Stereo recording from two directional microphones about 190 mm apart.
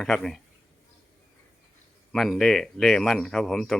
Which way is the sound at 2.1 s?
Centre (ahead or behind).